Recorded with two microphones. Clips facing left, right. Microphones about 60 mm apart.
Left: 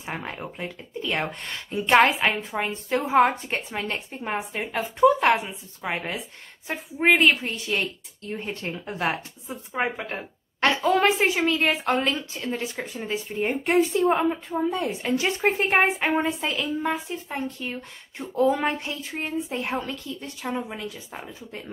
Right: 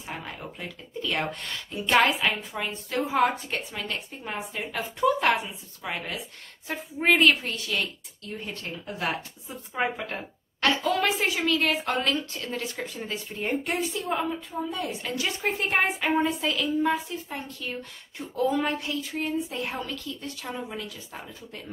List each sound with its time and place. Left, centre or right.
0.2 s a woman's voice: left
1.0 s a woman's voice: centre
9.8 s speech: centre
10.6 s a woman's voice: left
13.7 s a woman's voice: left